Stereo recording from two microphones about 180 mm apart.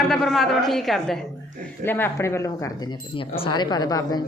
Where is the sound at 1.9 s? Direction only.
10° left (ahead or behind).